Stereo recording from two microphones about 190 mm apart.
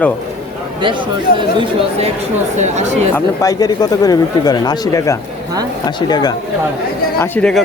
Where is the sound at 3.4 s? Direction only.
20° left (ahead or behind).